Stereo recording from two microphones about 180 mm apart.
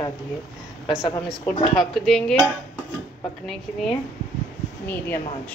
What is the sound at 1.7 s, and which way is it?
Speech, centre (ahead or behind).